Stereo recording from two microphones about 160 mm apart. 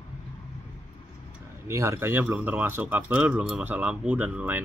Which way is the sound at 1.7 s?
15° right (ahead or behind).